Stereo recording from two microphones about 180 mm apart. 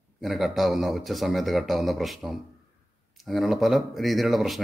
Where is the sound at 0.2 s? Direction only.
Centre (ahead or behind).